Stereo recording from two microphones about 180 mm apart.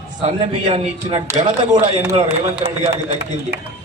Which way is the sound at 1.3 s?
40° right (ahead or behind).